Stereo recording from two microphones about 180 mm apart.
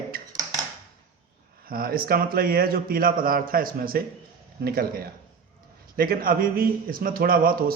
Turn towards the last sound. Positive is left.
turn(degrees=-55)  # may be behind; listen again after turning